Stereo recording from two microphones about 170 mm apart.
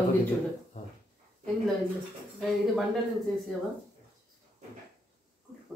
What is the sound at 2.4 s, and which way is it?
Speech, centre (ahead or behind).